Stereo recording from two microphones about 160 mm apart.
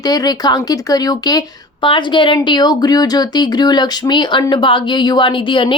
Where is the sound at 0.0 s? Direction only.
25° left (ahead or behind).